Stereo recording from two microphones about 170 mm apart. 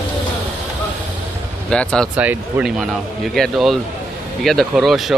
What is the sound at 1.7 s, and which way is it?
Speech, 5° left (ahead or behind).